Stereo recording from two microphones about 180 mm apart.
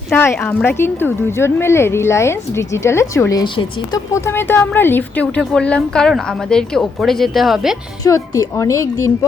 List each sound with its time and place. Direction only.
0.3 s a woman's voice: 10° left (ahead or behind); by 4.0 s 25° left (ahead or behind)
4.1 s a woman's voice: 10° left (ahead or behind)
8.0 s a woman's voice: 20° left (ahead or behind)